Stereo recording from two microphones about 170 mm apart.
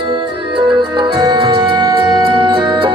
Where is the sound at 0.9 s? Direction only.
25° right (ahead or behind).